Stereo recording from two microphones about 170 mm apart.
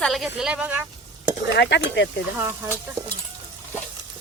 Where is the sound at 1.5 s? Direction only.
90° left.